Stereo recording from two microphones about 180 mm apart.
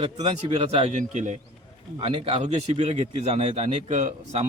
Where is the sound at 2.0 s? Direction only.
30° right (ahead or behind).